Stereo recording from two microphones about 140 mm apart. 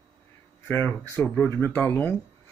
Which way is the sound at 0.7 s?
15° left (ahead or behind).